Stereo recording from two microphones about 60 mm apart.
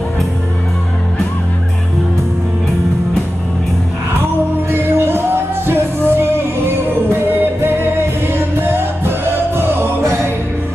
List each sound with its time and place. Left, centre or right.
4.6 s music: right